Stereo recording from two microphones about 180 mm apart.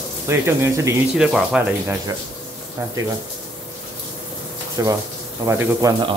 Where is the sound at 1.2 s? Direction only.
5° right (ahead or behind).